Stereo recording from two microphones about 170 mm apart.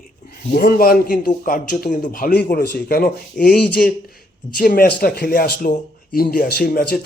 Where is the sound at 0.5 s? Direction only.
65° left (ahead or behind).